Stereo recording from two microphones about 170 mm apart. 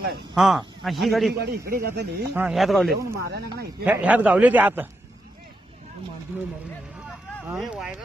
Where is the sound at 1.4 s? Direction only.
65° right (ahead or behind).